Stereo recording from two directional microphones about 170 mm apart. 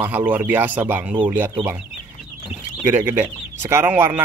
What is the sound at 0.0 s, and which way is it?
Speech, 10° right (ahead or behind).